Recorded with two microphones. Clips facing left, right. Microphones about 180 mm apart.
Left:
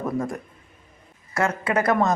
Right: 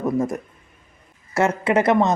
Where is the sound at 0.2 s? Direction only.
20° right (ahead or behind).